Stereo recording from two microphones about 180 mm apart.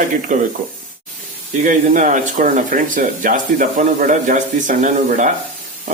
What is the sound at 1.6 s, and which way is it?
A man's voice, 45° right (ahead or behind).